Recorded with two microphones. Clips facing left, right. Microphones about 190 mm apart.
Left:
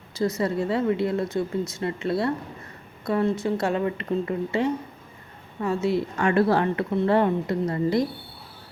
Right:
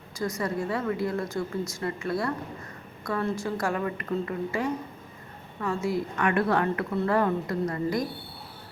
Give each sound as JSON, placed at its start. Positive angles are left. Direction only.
{"t": 0.3, "sound": "a woman's voice", "side_deg": 25}